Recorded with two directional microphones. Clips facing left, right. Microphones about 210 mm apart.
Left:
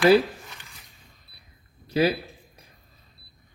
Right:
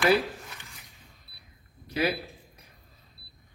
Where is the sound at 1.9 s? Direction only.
30° left (ahead or behind).